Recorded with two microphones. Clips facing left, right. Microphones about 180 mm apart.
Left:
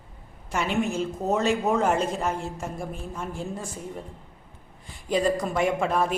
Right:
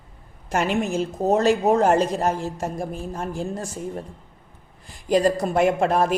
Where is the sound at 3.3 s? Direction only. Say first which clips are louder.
Right 5 dB; 85° right.